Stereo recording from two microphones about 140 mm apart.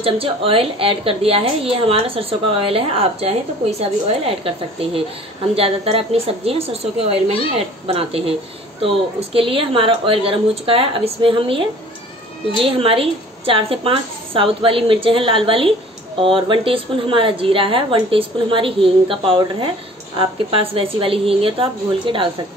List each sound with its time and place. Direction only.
0.0 s a woman's voice: 40° right (ahead or behind)